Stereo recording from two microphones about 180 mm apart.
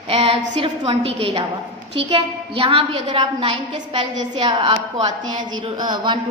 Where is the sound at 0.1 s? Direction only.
35° right (ahead or behind).